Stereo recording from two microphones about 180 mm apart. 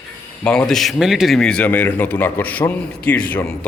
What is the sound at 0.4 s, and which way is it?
A man's voice, 5° left (ahead or behind).